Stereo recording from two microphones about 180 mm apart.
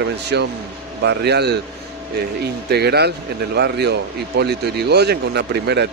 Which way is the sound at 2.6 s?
65° right (ahead or behind).